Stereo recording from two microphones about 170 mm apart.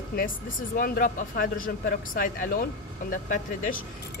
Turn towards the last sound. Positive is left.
turn(degrees=50)  # may be behind; listen again after turning